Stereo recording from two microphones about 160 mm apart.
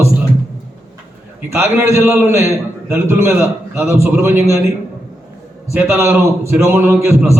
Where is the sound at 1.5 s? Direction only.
15° right (ahead or behind).